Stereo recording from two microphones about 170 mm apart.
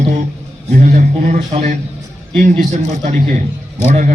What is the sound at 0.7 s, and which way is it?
A man's voice, 50° right (ahead or behind).